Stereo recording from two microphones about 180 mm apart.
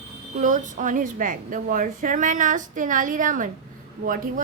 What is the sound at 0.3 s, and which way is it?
A woman's voice, 45° right (ahead or behind).